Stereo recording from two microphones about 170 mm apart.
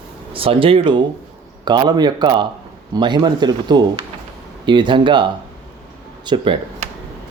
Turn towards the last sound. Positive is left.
turn(degrees=-30)  # may be behind; listen again after turning